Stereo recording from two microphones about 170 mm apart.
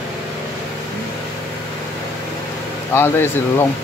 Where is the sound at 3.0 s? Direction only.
15° left (ahead or behind).